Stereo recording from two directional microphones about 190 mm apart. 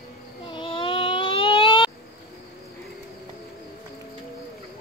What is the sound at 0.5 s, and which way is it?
Baby cry, 25° left (ahead or behind).